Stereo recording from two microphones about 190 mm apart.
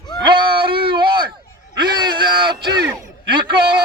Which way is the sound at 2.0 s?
25° right (ahead or behind).